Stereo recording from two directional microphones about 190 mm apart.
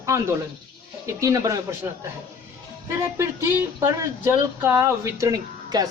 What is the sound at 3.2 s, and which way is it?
Speech, 15° right (ahead or behind).